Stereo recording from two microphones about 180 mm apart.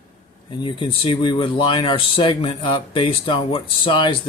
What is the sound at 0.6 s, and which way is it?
Speech, 25° left (ahead or behind).